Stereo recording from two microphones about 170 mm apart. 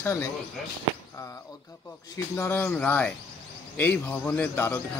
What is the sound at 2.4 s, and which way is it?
Speech, 15° left (ahead or behind).